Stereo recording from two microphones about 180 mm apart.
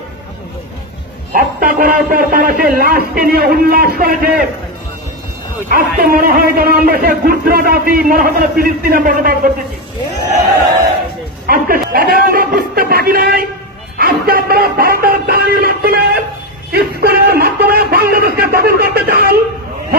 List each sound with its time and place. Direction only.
1.3 s a man's voice: 55° right (ahead or behind)
5.7 s a man's voice: 55° right (ahead or behind)
11.4 s a man's voice: 55° right (ahead or behind)
13.9 s a sound: 55° right (ahead or behind)